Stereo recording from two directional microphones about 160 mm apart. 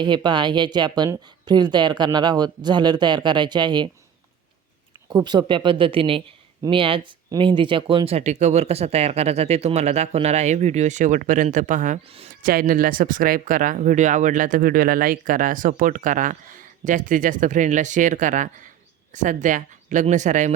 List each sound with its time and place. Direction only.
0.0 s speech: 30° right (ahead or behind)
5.0 s speech: 25° right (ahead or behind); by 11.9 s 50° right (ahead or behind)
12.4 s speech: 65° right (ahead or behind); by 20.5 s 50° right (ahead or behind)